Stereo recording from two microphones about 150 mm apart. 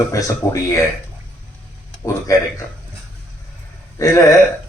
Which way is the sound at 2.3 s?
20° left (ahead or behind).